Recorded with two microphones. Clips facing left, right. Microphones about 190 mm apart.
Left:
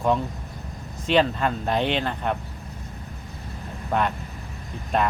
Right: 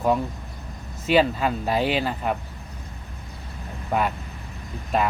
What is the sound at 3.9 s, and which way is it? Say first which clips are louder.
Speech: even; 10° right (ahead or behind).